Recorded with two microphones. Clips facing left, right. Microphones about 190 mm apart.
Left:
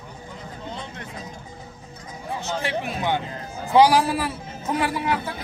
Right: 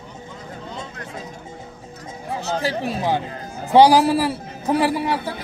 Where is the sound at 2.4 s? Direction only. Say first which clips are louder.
Right 4 dB; 35° right (ahead or behind).